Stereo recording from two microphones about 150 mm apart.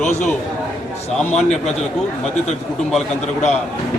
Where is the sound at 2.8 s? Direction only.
Centre (ahead or behind).